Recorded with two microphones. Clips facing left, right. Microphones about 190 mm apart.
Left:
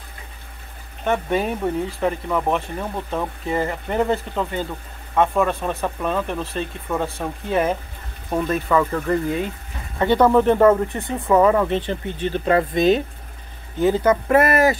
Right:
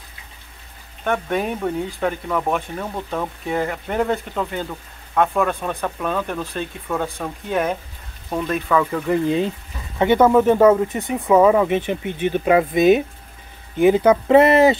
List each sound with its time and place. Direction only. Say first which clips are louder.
1.0 s speech: left 1 dB; centre (ahead or behind)
9.9 s speech: right 1 dB; 20° right (ahead or behind)
11.1 s speech: right 2 dB; centre (ahead or behind); by 14.8 s 25° right (ahead or behind)